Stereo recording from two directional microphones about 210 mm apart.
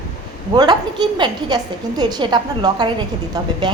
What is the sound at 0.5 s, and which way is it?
A woman's voice, 20° right (ahead or behind).